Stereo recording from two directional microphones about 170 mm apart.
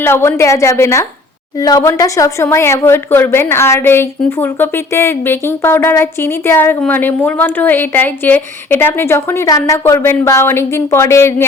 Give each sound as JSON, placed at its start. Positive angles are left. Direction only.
{"t": 0.0, "sound": "speech", "side_deg": 15}